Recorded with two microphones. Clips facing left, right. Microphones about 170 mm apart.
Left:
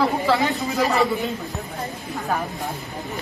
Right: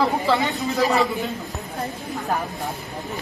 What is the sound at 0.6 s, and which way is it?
Speech, 20° left (ahead or behind).